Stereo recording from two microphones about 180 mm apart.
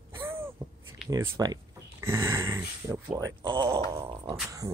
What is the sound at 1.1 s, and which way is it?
Speech, 15° right (ahead or behind).